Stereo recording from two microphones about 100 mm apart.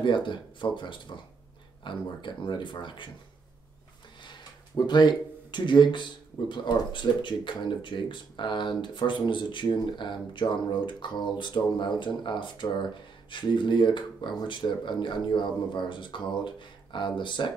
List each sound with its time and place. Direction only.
0.0 s speech: 55° left (ahead or behind)
4.2 s a sound: 50° left (ahead or behind)
6.5 s speech: 50° left (ahead or behind)